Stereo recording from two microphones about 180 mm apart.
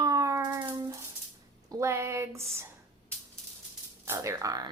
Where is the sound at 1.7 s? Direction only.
15° right (ahead or behind).